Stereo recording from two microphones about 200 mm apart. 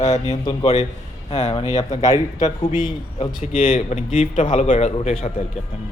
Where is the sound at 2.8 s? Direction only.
20° left (ahead or behind).